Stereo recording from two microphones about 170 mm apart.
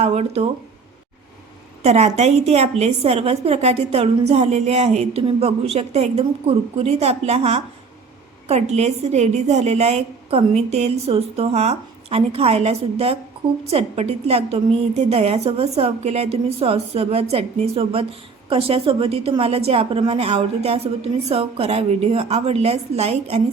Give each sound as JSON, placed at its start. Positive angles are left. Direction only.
{"t": 0.0, "sound": "a woman's voice", "side_deg": -40}
{"t": 1.8, "sound": "a woman's voice", "side_deg": -40}
{"t": 8.7, "sound": "a woman's voice", "side_deg": -40}